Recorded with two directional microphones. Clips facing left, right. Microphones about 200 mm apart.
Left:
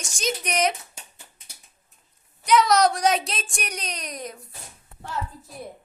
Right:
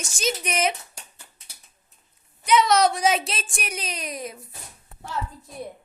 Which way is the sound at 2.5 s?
Centre (ahead or behind).